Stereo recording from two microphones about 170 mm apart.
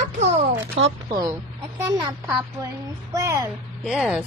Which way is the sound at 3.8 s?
Centre (ahead or behind).